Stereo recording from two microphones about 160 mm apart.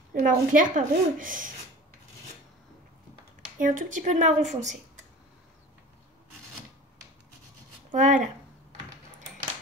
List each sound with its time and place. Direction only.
0.1 s a woman's voice: 60° right (ahead or behind)
3.5 s speech: 55° right (ahead or behind)
7.9 s speech: 50° right (ahead or behind)